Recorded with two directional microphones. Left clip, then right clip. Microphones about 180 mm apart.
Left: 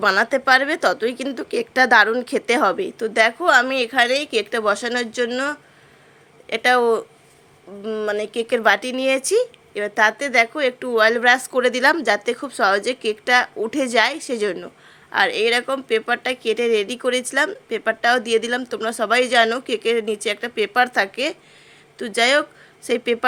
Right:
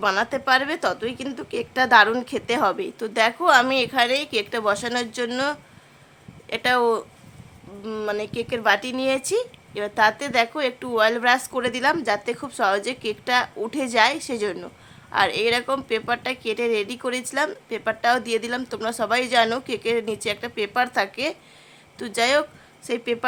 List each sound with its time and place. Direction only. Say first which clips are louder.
0.0 s a woman's voice: left 5 dB; 15° left (ahead or behind)